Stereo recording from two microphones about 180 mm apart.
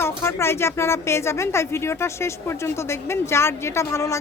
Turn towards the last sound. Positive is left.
turn(degrees=15)  # may be behind; listen again after turning